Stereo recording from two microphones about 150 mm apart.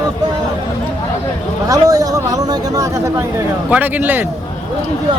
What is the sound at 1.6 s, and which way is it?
Speech, 25° right (ahead or behind).